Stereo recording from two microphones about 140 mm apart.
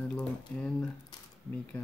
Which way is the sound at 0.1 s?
5° left (ahead or behind).